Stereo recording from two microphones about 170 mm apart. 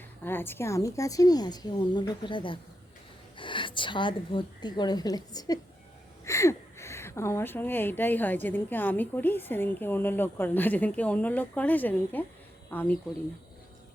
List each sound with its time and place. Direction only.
0.3 s a woman's voice: 15° left (ahead or behind)